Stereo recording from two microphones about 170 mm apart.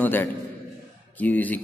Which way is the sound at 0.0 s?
10° left (ahead or behind).